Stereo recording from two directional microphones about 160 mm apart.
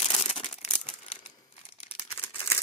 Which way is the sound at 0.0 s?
35° left (ahead or behind).